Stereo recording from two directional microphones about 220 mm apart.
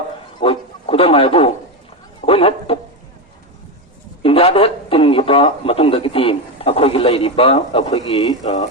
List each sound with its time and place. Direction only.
0.4 s a man's voice: 25° left (ahead or behind)
4.2 s a man's voice: 25° left (ahead or behind)